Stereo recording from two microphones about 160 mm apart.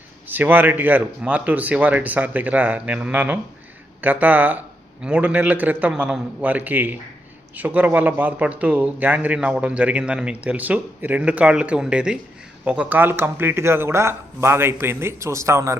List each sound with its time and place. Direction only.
0.3 s speech: 10° right (ahead or behind)